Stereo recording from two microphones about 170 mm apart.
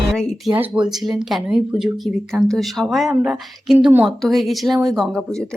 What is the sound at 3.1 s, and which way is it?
Speech, 10° right (ahead or behind).